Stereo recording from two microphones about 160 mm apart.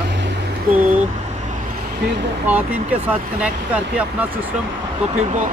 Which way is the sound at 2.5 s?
10° right (ahead or behind).